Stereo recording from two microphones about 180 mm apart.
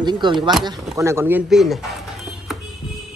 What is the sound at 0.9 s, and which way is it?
Speech, 15° right (ahead or behind).